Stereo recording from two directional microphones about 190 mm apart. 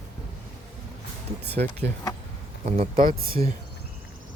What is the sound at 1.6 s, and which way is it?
Speech, 45° right (ahead or behind).